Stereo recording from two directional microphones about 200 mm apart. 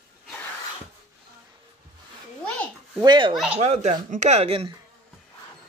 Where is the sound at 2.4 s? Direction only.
5° left (ahead or behind).